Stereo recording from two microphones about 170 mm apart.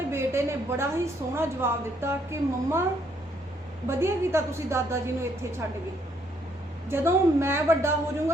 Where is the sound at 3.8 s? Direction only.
15° right (ahead or behind).